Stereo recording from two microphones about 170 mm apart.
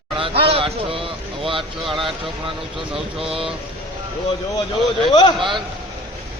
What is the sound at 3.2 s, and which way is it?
Speech, 35° right (ahead or behind).